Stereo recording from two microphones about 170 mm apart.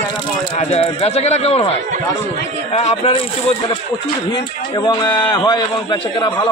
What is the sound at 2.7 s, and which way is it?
Speech, 40° left (ahead or behind).